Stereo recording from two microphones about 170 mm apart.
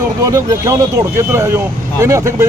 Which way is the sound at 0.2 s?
20° right (ahead or behind).